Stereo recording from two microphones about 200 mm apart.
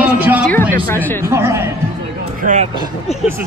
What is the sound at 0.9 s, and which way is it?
Speech, 10° left (ahead or behind).